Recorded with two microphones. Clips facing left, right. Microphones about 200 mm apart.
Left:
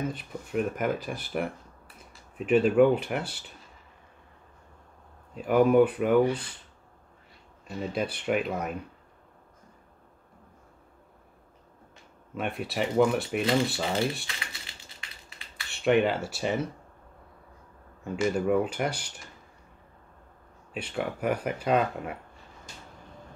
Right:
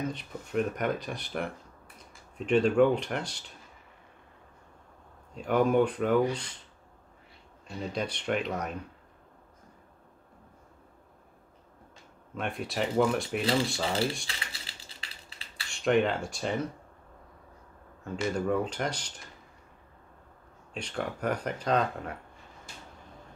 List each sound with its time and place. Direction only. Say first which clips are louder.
0.1 s speech: left 1 dB; 5° left (ahead or behind)
5.3 s speech: left 4 dB; 5° left (ahead or behind)
7.6 s speech: left 3 dB; 5° left (ahead or behind)
12.4 s speech: left 2 dB; centre (ahead or behind)
14.2 s typing: left 1 dB; 30° right (ahead or behind)
15.7 s speech: left 2 dB; 5° left (ahead or behind)
18.0 s speech: left 4 dB; 10° left (ahead or behind)
20.7 s speech: left 3 dB; 5° left (ahead or behind)